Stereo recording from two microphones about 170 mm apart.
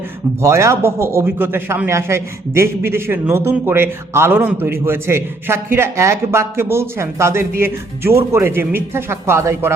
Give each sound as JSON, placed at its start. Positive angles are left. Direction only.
{"t": 0.4, "sound": "a man's voice", "side_deg": -15}